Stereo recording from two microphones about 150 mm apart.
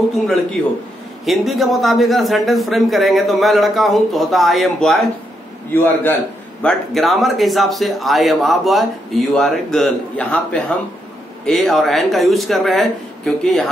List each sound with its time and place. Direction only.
1.2 s speech: centre (ahead or behind)
5.7 s a man's voice: 15° left (ahead or behind)
6.6 s speech: centre (ahead or behind)